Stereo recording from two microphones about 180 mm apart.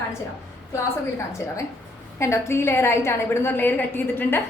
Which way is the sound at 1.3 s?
15° left (ahead or behind).